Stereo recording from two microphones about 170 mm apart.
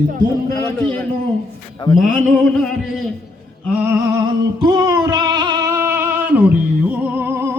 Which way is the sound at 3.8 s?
15° right (ahead or behind).